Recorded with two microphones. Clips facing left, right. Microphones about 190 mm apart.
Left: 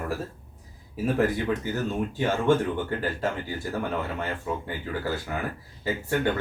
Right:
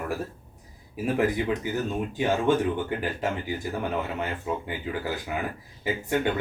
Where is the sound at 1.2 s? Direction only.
15° right (ahead or behind).